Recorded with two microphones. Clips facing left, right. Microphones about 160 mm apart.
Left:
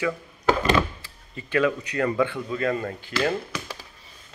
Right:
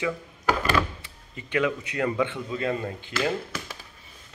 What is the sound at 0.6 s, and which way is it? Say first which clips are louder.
Thunk: left 2 dB; 25° left (ahead or behind).